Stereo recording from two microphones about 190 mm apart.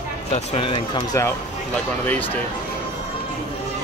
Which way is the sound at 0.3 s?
30° left (ahead or behind).